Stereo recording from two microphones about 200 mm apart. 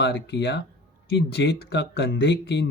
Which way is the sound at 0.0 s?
55° left (ahead or behind).